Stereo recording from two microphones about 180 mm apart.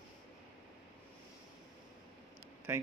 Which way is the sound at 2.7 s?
10° right (ahead or behind).